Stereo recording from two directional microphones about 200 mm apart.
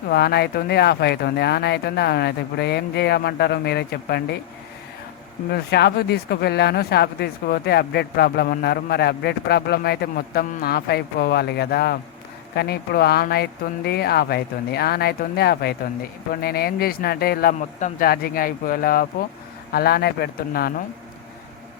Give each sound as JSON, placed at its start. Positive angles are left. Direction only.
{"t": 0.1, "sound": "speech", "side_deg": 55}
{"t": 5.5, "sound": "speech", "side_deg": 55}